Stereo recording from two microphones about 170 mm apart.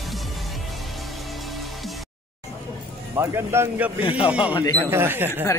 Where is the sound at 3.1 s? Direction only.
15° right (ahead or behind).